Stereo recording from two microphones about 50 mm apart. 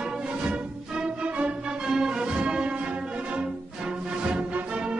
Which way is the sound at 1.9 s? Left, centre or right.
Centre.